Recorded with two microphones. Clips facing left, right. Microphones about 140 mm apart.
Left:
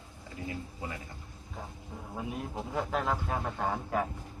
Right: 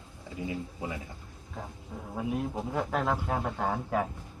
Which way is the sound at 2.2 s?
5° right (ahead or behind).